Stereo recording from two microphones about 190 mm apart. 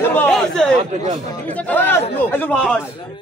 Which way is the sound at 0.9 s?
35° right (ahead or behind).